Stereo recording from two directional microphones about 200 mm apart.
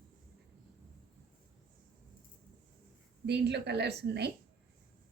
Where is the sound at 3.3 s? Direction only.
60° right (ahead or behind).